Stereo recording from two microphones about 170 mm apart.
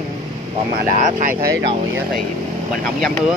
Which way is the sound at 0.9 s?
45° right (ahead or behind).